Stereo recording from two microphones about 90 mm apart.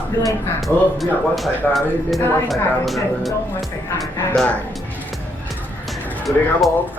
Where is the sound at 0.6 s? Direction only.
Centre (ahead or behind).